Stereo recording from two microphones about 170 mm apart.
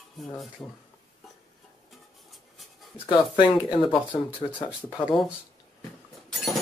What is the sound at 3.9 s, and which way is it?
Speech, 30° left (ahead or behind).